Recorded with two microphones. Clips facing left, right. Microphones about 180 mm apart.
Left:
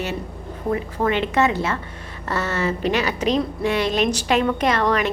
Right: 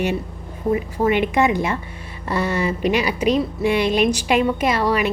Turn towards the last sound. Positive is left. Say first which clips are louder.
# right 1 dB
turn(degrees=-10)  # may be behind; listen again after turning